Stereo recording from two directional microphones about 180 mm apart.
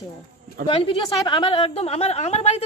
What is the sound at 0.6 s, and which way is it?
Speech, 50° right (ahead or behind).